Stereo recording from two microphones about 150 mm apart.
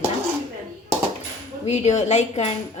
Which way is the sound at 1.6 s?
45° left (ahead or behind).